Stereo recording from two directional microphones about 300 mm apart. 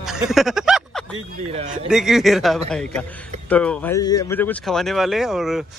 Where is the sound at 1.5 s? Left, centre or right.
Right.